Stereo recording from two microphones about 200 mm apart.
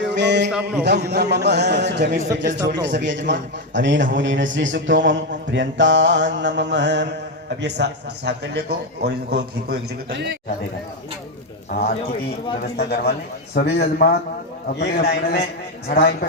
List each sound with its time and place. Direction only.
0.1 s a sound: 60° right (ahead or behind)
0.8 s a man's voice: 55° right (ahead or behind)
11.7 s a man's voice: 50° left (ahead or behind)